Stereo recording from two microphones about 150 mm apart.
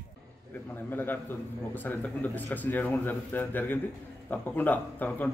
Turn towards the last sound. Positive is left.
turn(degrees=10)  # may be behind; listen again after turning